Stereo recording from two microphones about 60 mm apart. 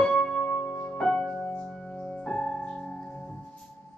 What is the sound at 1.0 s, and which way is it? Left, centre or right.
Music, centre.